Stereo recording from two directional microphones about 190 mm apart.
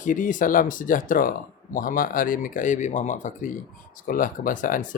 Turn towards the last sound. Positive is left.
turn(degrees=45)  # may be behind; listen again after turning